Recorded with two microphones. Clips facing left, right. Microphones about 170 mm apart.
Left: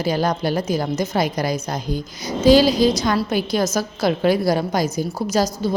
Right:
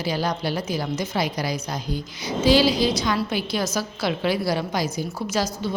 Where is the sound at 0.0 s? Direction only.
45° left (ahead or behind).